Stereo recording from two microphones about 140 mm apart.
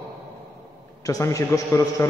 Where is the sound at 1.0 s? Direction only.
25° left (ahead or behind).